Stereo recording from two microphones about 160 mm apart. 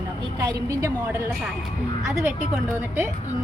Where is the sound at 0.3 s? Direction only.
15° right (ahead or behind).